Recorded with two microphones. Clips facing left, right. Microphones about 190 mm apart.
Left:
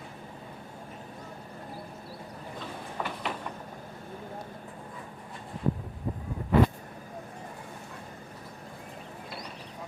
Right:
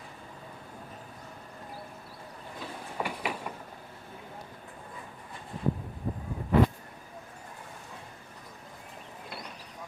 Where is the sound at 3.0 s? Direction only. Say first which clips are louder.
Right 1 dB; 10° right (ahead or behind).